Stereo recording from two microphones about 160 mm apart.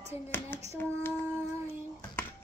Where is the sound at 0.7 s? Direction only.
15° left (ahead or behind).